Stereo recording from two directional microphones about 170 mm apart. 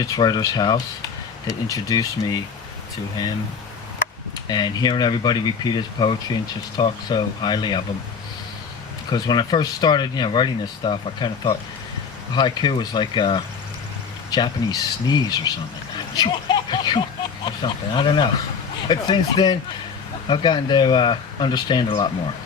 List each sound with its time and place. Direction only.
0.0 s speech: 25° left (ahead or behind)
4.4 s speech: 25° left (ahead or behind)
9.1 s speech: 25° left (ahead or behind)